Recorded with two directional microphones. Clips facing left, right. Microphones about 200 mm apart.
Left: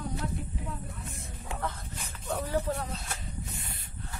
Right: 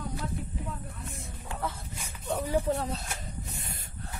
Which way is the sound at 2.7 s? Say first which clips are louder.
Right 4 dB; 30° right (ahead or behind).